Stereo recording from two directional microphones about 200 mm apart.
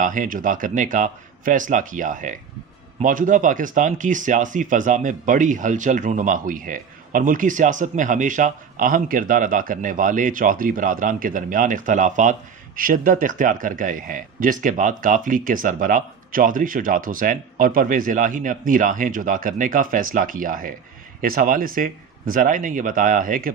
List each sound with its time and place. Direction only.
0.0 s speech: 40° right (ahead or behind)